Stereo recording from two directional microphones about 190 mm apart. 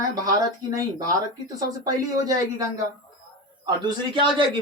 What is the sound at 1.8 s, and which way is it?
Speech, 20° right (ahead or behind).